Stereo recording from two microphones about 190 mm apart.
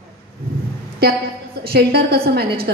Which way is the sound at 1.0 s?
55° right (ahead or behind).